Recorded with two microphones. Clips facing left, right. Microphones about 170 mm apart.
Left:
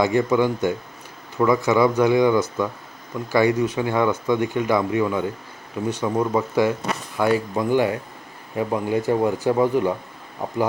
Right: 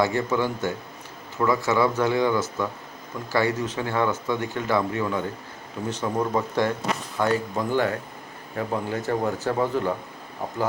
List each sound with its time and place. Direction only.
0.0 s speech: 15° left (ahead or behind)